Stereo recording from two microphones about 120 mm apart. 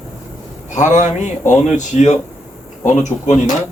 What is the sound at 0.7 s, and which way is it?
Speech, 90° left.